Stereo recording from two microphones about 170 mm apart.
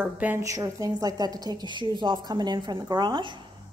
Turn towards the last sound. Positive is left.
turn(degrees=-25)  # may be behind; listen again after turning